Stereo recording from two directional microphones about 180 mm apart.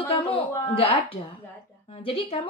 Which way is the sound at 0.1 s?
30° left (ahead or behind).